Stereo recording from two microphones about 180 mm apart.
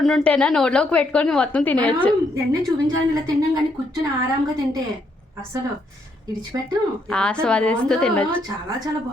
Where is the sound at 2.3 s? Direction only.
20° right (ahead or behind).